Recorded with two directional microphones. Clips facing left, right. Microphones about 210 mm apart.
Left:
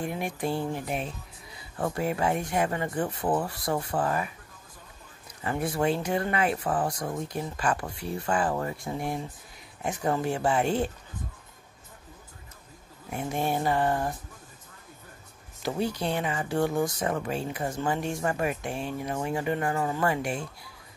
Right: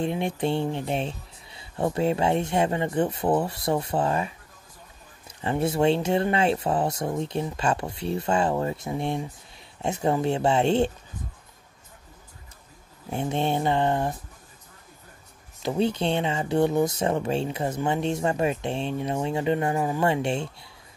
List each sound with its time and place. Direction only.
0.0 s speech: 25° right (ahead or behind)
5.4 s speech: 25° right (ahead or behind)
13.1 s speech: 25° right (ahead or behind)
15.6 s speech: 25° right (ahead or behind)